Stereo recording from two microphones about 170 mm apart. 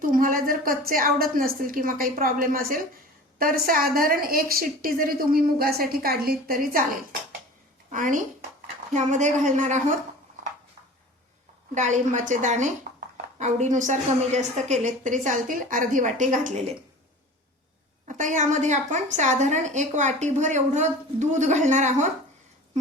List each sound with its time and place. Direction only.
0.0 s a woman's voice: 55° right (ahead or behind)
7.9 s a woman's voice: 50° right (ahead or behind)
11.7 s a woman's voice: 45° right (ahead or behind)
12.9 s a sound: 50° right (ahead or behind)
13.4 s a woman's voice: 45° right (ahead or behind)
18.1 s a woman's voice: 50° right (ahead or behind)